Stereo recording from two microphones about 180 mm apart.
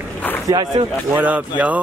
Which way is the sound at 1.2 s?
10° right (ahead or behind).